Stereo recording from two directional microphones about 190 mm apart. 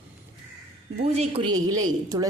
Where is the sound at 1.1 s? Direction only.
30° right (ahead or behind).